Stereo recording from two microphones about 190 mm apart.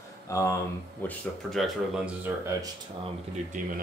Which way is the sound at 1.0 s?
5° left (ahead or behind).